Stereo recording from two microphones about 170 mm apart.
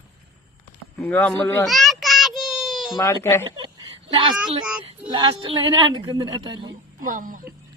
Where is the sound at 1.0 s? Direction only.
10° left (ahead or behind).